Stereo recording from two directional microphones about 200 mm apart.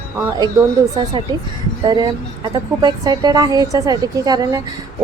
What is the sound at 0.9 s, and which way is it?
A woman's voice, 20° right (ahead or behind).